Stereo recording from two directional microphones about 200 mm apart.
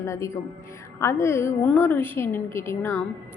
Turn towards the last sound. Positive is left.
turn(degrees=10)  # may be behind; listen again after turning